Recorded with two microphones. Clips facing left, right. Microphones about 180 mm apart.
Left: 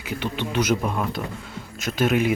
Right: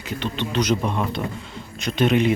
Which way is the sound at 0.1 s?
10° left (ahead or behind).